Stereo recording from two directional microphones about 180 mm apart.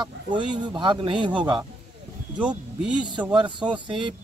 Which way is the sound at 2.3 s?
5° right (ahead or behind).